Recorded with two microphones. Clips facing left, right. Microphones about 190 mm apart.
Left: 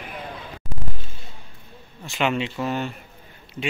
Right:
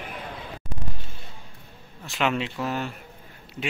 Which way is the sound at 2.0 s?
Centre (ahead or behind).